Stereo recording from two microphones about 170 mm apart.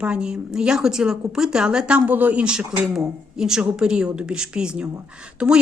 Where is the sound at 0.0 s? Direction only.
5° right (ahead or behind).